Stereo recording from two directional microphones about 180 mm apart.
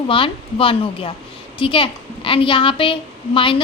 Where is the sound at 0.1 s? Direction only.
30° left (ahead or behind).